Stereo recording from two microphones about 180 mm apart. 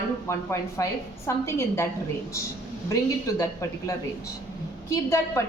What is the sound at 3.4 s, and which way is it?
A woman's voice, 15° left (ahead or behind).